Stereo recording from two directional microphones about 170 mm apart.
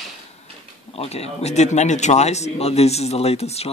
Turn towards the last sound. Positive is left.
turn(degrees=40)  # may be behind; listen again after turning